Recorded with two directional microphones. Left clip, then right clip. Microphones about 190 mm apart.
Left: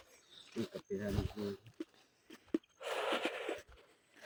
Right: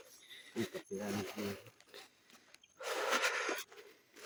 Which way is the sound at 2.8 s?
15° right (ahead or behind).